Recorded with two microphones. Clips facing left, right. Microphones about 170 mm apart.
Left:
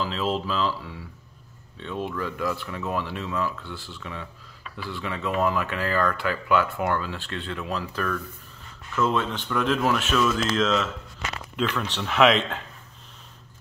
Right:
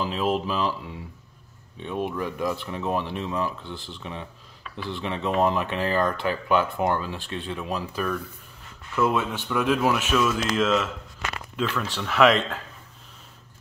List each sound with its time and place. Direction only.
0.0 s speech: 15° right (ahead or behind); by 12.4 s centre (ahead or behind)